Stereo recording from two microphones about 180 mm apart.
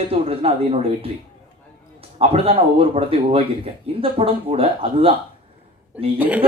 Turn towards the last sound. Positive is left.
turn(degrees=-10)  # may be behind; listen again after turning